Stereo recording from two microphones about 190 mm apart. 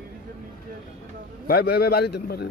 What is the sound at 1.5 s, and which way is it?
Speech, 55° left (ahead or behind).